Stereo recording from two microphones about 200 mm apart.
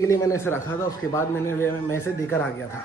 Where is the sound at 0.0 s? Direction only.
15° left (ahead or behind).